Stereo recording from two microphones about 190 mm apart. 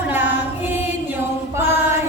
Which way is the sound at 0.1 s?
10° right (ahead or behind).